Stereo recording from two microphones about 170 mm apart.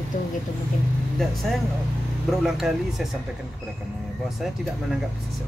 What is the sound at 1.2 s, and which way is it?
A man's voice, centre (ahead or behind).